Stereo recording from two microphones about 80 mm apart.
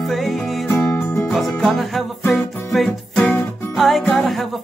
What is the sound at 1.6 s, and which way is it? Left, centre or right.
Music, centre.